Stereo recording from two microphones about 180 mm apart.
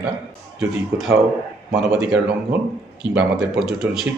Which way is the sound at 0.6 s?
Centre (ahead or behind).